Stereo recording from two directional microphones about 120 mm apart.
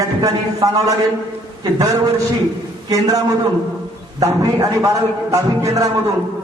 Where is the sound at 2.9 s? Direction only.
30° right (ahead or behind).